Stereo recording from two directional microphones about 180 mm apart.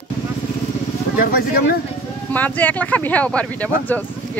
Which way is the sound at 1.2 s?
55° left (ahead or behind).